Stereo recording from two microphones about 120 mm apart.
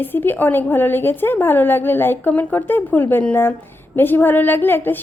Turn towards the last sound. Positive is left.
turn(degrees=15)  # may be behind; listen again after turning